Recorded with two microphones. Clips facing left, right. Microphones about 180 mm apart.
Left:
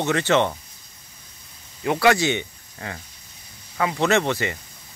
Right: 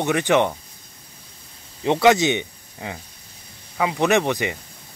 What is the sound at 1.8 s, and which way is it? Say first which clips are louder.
Speech: right 3 dB; 25° right (ahead or behind).